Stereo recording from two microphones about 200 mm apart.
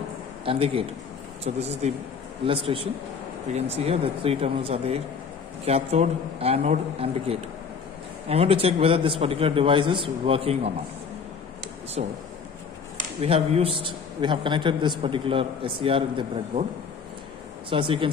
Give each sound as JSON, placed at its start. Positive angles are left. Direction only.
{"t": 0.5, "sound": "a man's voice", "side_deg": -30}
{"t": 12.0, "sound": "a man's voice", "side_deg": -35}
{"t": 13.2, "sound": "a man's voice", "side_deg": -30}
{"t": 17.6, "sound": "a man's voice", "side_deg": -25}